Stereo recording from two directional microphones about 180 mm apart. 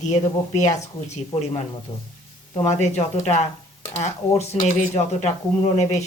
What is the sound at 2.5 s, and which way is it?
Speech, 35° left (ahead or behind).